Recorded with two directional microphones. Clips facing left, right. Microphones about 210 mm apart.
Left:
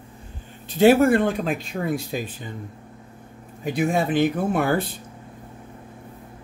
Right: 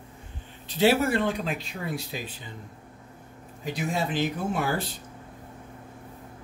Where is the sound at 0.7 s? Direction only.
50° left (ahead or behind).